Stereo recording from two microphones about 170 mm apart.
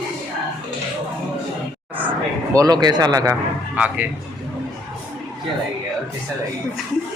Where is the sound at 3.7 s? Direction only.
10° right (ahead or behind).